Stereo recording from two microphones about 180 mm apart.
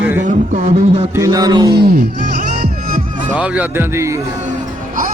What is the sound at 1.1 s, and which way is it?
Music, 20° right (ahead or behind).